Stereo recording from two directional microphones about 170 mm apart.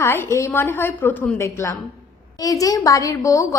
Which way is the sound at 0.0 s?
15° left (ahead or behind).